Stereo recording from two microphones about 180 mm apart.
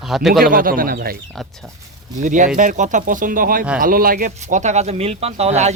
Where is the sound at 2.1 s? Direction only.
45° right (ahead or behind).